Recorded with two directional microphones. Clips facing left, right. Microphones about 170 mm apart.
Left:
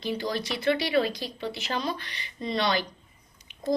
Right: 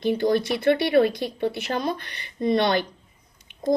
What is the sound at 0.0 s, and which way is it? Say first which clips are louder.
Speech: right 9 dB; 55° right (ahead or behind).